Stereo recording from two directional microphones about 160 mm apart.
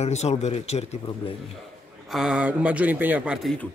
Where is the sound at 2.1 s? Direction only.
5° right (ahead or behind).